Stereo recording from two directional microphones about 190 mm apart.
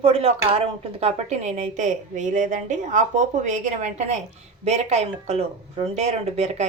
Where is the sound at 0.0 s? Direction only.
30° right (ahead or behind).